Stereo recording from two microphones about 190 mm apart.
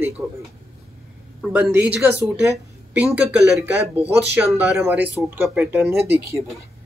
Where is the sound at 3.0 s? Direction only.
5° right (ahead or behind).